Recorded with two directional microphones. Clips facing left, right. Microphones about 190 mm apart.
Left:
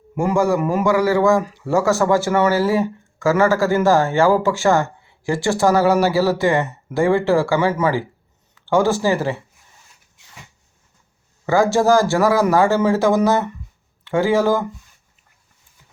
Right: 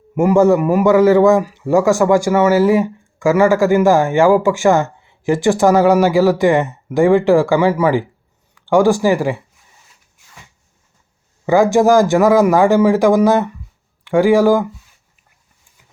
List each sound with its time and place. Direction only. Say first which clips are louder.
0.2 s a man's voice: right 6 dB; 20° right (ahead or behind)
11.4 s speech: right 4 dB; 15° right (ahead or behind)